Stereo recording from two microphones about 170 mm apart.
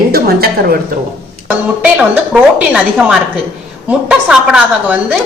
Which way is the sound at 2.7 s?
5° right (ahead or behind).